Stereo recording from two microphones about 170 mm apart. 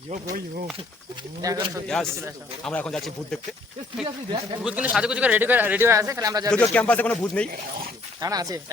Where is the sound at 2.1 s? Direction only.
15° right (ahead or behind).